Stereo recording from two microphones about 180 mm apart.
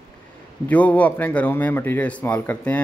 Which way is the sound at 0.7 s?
10° left (ahead or behind).